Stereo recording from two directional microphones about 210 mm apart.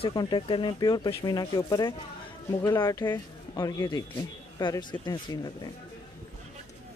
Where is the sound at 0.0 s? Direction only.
20° left (ahead or behind).